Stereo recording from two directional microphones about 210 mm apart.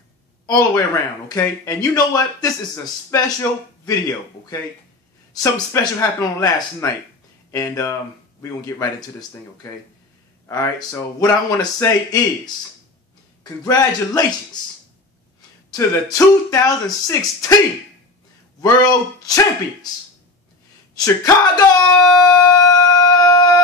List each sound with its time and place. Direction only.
0.5 s speech: 15° left (ahead or behind)
5.3 s speech: 15° left (ahead or behind)
13.4 s speech: 15° left (ahead or behind)
15.7 s speech: 15° left (ahead or behind)
18.6 s speech: 15° left (ahead or behind)
21.0 s speech: 15° left (ahead or behind)
22.2 s a sound: 15° left (ahead or behind)